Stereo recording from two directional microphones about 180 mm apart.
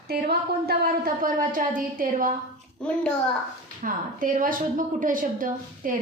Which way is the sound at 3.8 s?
50° right (ahead or behind).